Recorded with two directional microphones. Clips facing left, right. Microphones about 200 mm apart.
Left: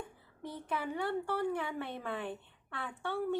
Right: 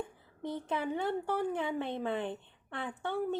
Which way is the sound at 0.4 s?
20° right (ahead or behind).